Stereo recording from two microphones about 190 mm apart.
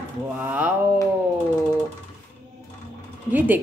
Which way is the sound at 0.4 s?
10° right (ahead or behind).